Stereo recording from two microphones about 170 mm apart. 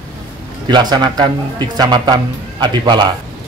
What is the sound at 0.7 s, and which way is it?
Speech, 25° right (ahead or behind).